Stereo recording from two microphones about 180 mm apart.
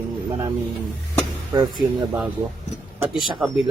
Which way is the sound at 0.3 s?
20° right (ahead or behind).